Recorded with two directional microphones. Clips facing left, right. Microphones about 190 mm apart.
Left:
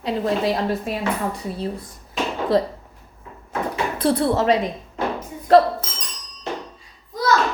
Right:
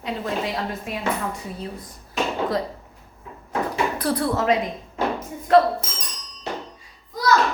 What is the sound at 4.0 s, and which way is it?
A woman's voice, 25° left (ahead or behind).